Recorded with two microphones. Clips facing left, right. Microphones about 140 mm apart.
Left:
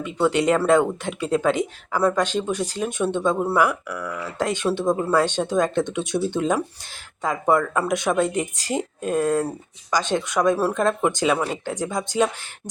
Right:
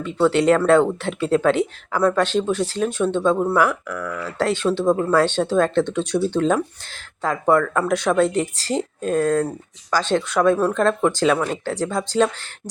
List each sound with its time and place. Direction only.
0.0 s speech: 10° left (ahead or behind)